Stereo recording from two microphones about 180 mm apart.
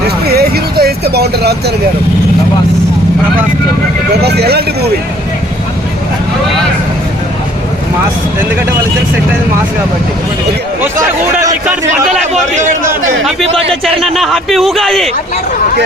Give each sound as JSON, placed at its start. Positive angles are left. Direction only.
{"t": 0.3, "sound": "vehicle", "side_deg": -60}
{"t": 4.1, "sound": "speech", "side_deg": -65}
{"t": 10.8, "sound": "a man's voice", "side_deg": -15}
{"t": 12.3, "sound": "a man's voice", "side_deg": -40}
{"t": 14.2, "sound": "a man's voice", "side_deg": 0}